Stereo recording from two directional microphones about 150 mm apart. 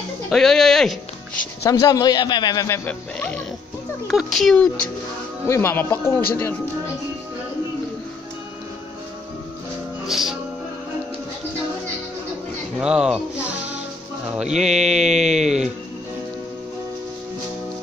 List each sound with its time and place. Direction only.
0.3 s speech: 5° left (ahead or behind)
1.6 s a man's voice: 25° left (ahead or behind); by 4.6 s centre (ahead or behind)
5.5 s speech: 15° left (ahead or behind)
10.0 s music: centre (ahead or behind)
12.7 s speech: 5° right (ahead or behind)